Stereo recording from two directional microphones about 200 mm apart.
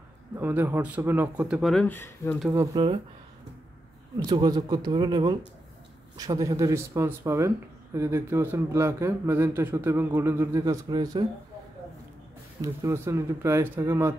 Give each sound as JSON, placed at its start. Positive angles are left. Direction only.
{"t": 0.4, "sound": "speech", "side_deg": -10}
{"t": 2.5, "sound": "speech", "side_deg": -20}
{"t": 4.2, "sound": "speech", "side_deg": -20}
{"t": 12.6, "sound": "speech", "side_deg": -15}